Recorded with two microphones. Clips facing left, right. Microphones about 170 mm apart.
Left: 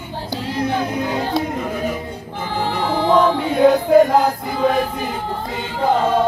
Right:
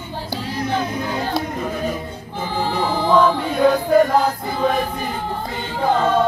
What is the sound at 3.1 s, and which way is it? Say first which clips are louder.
Music: left 1 dB; 25° left (ahead or behind).